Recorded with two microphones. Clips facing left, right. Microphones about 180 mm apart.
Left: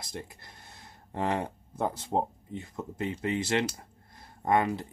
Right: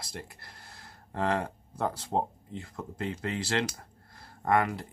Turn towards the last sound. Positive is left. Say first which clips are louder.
# left 1 dB
turn(degrees=25)  # may be behind; listen again after turning